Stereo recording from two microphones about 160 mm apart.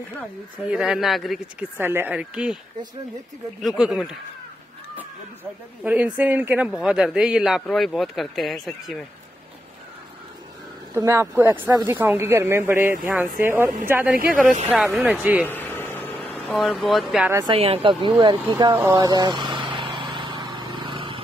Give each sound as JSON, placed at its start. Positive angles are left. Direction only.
{"t": 0.7, "sound": "speech", "side_deg": -5}
{"t": 1.8, "sound": "speech", "side_deg": -15}
{"t": 3.6, "sound": "speech", "side_deg": 0}
{"t": 11.0, "sound": "speech", "side_deg": -15}
{"t": 15.4, "sound": "air conditioning", "side_deg": 10}
{"t": 17.5, "sound": "speech", "side_deg": -35}
{"t": 18.7, "sound": "a sound", "side_deg": -15}